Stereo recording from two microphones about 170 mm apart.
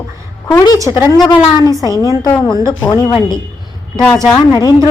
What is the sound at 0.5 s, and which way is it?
Speech, 20° left (ahead or behind).